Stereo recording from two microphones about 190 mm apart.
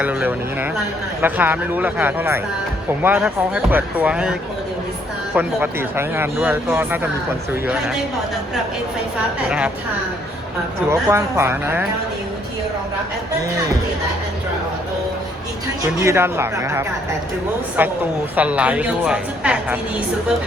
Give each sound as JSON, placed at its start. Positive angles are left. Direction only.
{"t": 0.0, "sound": "speech", "side_deg": -10}
{"t": 9.5, "sound": "a woman's voice", "side_deg": -5}
{"t": 10.8, "sound": "speech", "side_deg": -15}
{"t": 16.0, "sound": "speech", "side_deg": -15}